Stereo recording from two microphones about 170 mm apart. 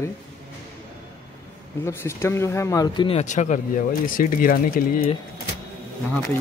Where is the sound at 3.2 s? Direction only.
45° left (ahead or behind).